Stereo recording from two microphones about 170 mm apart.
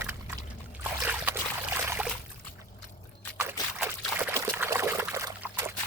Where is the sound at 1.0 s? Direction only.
10° right (ahead or behind).